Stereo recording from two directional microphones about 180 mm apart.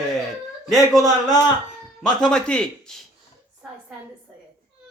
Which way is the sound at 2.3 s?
5° left (ahead or behind).